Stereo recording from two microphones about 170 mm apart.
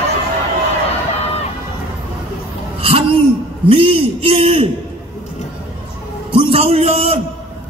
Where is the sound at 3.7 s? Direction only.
30° right (ahead or behind).